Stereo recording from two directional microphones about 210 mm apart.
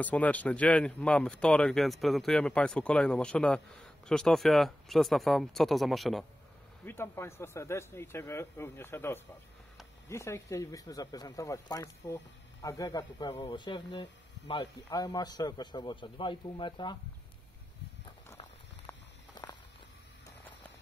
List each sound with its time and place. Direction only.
0.0 s speech: 5° left (ahead or behind)
6.9 s a man's voice: 10° left (ahead or behind)